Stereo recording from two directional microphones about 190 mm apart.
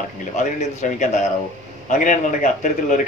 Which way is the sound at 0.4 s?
40° left (ahead or behind).